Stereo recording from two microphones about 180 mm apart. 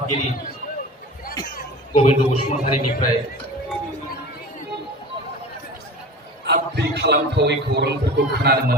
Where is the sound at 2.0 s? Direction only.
35° left (ahead or behind).